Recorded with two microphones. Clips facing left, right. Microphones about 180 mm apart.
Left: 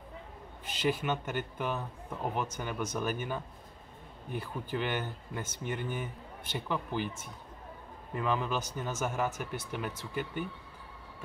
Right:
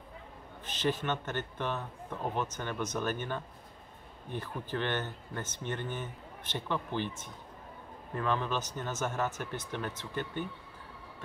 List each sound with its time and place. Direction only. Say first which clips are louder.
0.7 s speech: left 1 dB; 10° left (ahead or behind)